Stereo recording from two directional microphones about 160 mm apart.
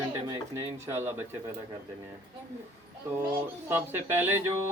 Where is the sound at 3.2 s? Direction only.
15° right (ahead or behind).